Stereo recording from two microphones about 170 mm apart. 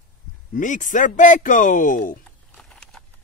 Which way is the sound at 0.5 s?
50° left (ahead or behind).